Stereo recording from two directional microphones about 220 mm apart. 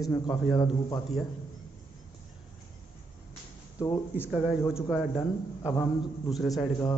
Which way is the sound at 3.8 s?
15° left (ahead or behind).